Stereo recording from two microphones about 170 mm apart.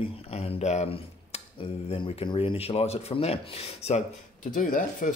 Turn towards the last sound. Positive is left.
turn(degrees=50)  # may be behind; listen again after turning